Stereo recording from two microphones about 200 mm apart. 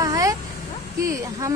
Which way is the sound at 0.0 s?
15° right (ahead or behind).